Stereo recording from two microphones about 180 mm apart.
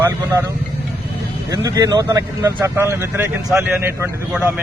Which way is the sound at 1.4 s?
20° right (ahead or behind).